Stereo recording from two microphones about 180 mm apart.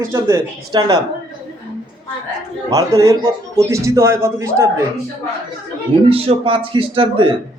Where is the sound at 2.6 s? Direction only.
20° right (ahead or behind).